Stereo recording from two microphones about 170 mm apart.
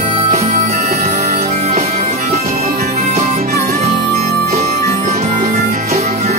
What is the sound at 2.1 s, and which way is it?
Music, 50° right (ahead or behind).